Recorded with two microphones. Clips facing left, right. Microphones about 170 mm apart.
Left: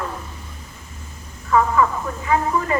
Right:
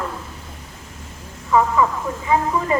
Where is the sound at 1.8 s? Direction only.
20° right (ahead or behind).